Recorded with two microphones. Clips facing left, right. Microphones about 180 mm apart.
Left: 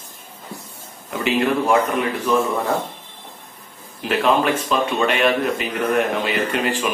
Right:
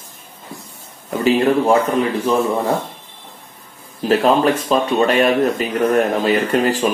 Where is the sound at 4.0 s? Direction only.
35° right (ahead or behind).